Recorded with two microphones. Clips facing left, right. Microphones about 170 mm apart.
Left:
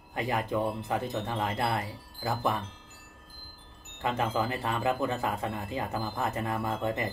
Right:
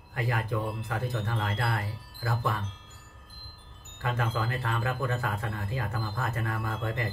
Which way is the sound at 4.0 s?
20° left (ahead or behind).